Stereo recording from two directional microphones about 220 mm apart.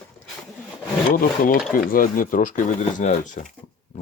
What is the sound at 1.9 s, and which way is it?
Speech, 40° left (ahead or behind).